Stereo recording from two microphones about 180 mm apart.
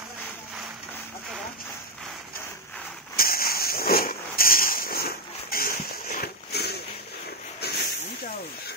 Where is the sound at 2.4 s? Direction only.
10° left (ahead or behind).